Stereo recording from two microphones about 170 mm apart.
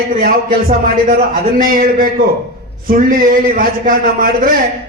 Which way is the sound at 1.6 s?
55° right (ahead or behind).